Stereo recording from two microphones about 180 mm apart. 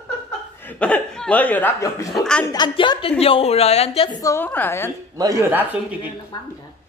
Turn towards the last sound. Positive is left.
turn(degrees=-10)  # may be behind; listen again after turning